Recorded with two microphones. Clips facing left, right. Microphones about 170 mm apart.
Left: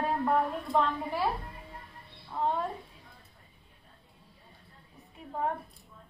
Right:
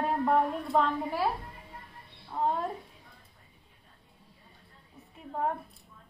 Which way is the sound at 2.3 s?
10° right (ahead or behind).